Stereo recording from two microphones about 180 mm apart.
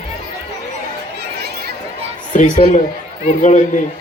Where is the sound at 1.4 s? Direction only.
60° right (ahead or behind).